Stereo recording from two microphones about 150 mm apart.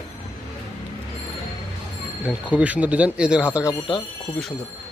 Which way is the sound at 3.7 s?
30° left (ahead or behind).